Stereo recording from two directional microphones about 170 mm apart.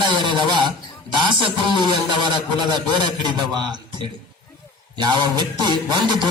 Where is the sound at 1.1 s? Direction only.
30° right (ahead or behind).